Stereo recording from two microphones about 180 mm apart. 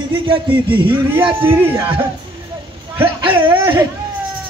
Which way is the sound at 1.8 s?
30° right (ahead or behind).